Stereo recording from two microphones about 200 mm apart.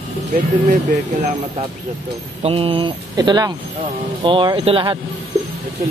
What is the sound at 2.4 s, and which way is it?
Speech, 25° right (ahead or behind).